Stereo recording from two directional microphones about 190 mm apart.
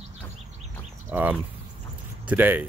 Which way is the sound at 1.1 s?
10° right (ahead or behind).